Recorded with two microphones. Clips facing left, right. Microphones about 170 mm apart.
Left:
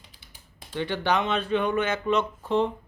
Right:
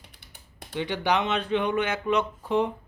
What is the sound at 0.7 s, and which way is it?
Speech, 15° right (ahead or behind).